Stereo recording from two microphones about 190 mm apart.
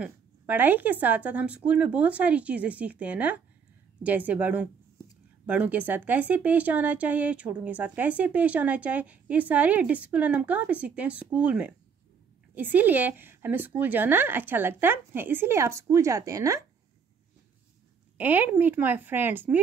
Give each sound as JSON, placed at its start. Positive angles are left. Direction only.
{"t": 0.0, "sound": "speech", "side_deg": -10}
{"t": 18.1, "sound": "speech", "side_deg": -10}